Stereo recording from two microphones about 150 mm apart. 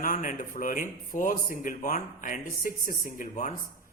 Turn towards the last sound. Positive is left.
turn(degrees=60)  # may be behind; listen again after turning